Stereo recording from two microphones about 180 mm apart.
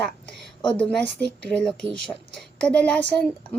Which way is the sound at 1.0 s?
75° right (ahead or behind).